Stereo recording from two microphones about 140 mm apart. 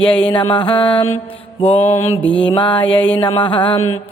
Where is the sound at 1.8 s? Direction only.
20° left (ahead or behind).